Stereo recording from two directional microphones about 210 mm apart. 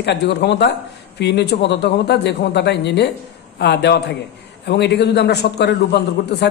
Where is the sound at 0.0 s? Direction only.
55° left (ahead or behind).